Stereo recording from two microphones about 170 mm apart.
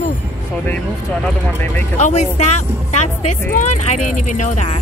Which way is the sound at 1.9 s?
40° left (ahead or behind).